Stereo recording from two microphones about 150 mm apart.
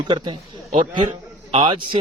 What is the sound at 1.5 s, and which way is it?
Speech, 30° right (ahead or behind).